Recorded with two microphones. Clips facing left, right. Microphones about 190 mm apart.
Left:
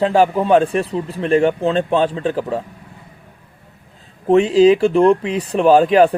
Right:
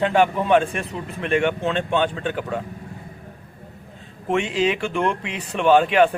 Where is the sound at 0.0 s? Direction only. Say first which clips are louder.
Left 4 dB; 35° left (ahead or behind).